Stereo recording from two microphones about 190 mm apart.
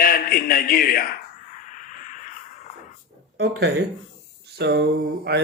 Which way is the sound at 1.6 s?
40° left (ahead or behind).